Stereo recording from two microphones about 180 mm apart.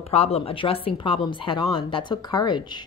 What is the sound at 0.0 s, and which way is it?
A woman's voice, 35° left (ahead or behind).